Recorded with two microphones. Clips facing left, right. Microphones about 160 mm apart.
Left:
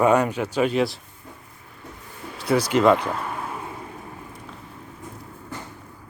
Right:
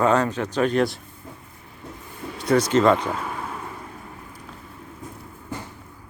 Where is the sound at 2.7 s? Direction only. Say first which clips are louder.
Left 3 dB; 5° left (ahead or behind).